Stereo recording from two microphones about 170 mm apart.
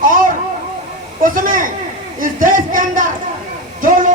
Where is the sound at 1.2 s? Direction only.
55° right (ahead or behind).